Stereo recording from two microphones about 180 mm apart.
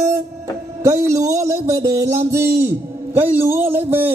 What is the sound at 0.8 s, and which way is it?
Speech, 15° right (ahead or behind).